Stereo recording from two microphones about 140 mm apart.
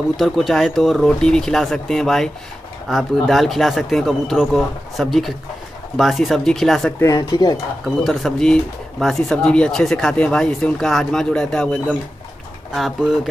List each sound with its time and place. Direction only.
0.2 s speech: centre (ahead or behind)
7.0 s speech: 25° left (ahead or behind)
7.8 s speech: centre (ahead or behind)